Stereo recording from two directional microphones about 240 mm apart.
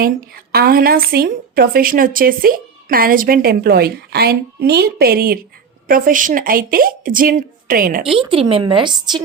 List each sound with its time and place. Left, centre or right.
0.0 s a woman's voice: right
8.0 s speech: right